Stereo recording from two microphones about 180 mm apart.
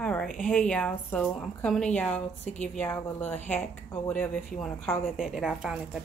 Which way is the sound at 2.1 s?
40° left (ahead or behind).